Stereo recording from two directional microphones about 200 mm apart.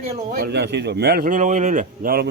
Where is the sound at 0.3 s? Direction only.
50° right (ahead or behind).